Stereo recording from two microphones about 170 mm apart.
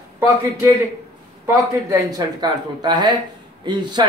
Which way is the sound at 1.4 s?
15° right (ahead or behind).